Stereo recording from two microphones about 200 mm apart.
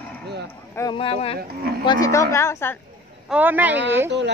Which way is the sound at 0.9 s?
30° left (ahead or behind).